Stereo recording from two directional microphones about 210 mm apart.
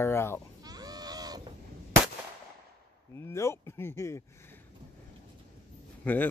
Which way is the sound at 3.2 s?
15° left (ahead or behind).